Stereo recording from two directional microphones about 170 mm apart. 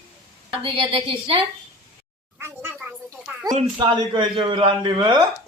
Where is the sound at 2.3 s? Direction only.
15° right (ahead or behind).